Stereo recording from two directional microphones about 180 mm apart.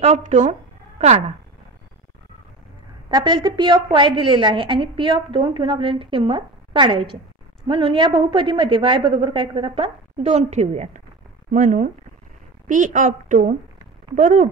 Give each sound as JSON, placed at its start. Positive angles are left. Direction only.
{"t": 0.0, "sound": "speech", "side_deg": -40}
{"t": 3.1, "sound": "a woman's voice", "side_deg": -25}